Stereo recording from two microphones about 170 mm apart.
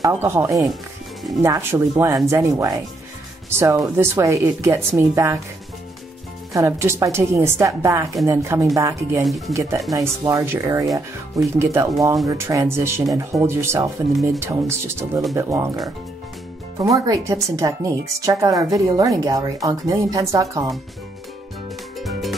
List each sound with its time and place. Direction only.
0.0 s speech: 15° right (ahead or behind)
6.5 s speech: 15° right (ahead or behind)
16.9 s speech: 20° right (ahead or behind)
22.0 s music: centre (ahead or behind)